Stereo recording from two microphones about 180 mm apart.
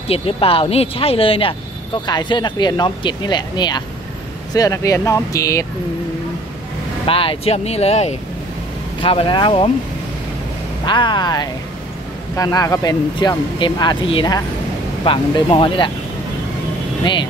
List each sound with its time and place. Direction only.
0.1 s speech: 30° left (ahead or behind)
7.1 s speech: 30° left (ahead or behind)
10.9 s speech: 25° left (ahead or behind)
17.0 s speech: 25° left (ahead or behind)